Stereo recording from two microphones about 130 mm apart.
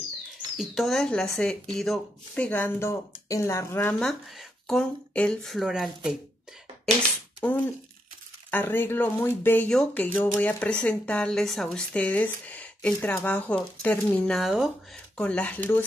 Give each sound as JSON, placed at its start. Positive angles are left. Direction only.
{"t": 0.6, "sound": "speech", "side_deg": 0}
{"t": 4.0, "sound": "speech", "side_deg": 0}
{"t": 8.5, "sound": "speech", "side_deg": 15}
{"t": 9.7, "sound": "speech", "side_deg": 5}
{"t": 15.1, "sound": "speech", "side_deg": 10}